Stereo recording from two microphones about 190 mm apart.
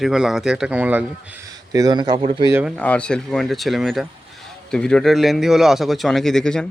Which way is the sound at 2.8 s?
5° left (ahead or behind).